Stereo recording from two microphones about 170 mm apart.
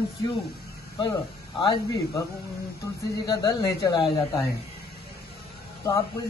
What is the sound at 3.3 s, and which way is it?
Speech, 20° left (ahead or behind).